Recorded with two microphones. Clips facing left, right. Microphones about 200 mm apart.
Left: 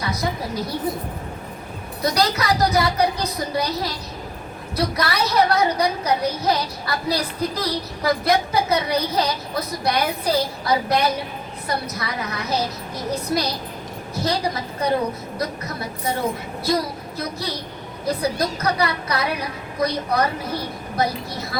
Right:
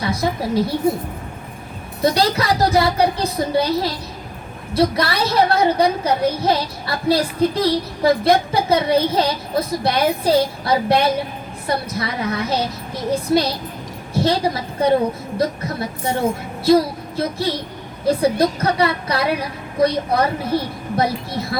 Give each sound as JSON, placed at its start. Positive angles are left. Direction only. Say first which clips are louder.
{"t": 0.0, "sound": "a woman's voice", "louder": "right 4 dB", "side_deg": -30}
{"t": 2.0, "sound": "a woman's voice", "louder": "right 4 dB", "side_deg": -30}